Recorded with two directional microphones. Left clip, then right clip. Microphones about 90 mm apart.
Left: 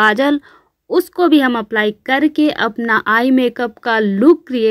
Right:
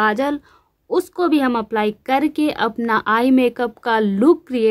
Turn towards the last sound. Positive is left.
turn(degrees=15)  # may be behind; listen again after turning